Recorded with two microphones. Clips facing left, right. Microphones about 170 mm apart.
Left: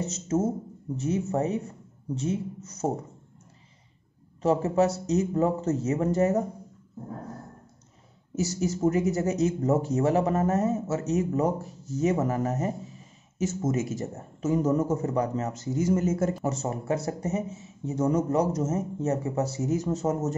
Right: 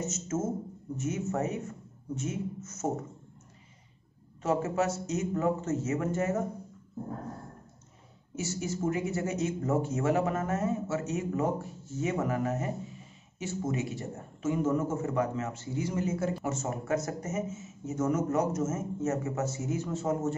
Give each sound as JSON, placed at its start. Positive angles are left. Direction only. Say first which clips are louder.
{"t": 0.0, "sound": "speech", "louder": "left 5 dB", "side_deg": 35}
{"t": 4.4, "sound": "speech", "louder": "left 6 dB", "side_deg": 35}
{"t": 8.4, "sound": "speech", "louder": "left 6 dB", "side_deg": 40}
{"t": 16.4, "sound": "speech", "louder": "left 4 dB", "side_deg": 35}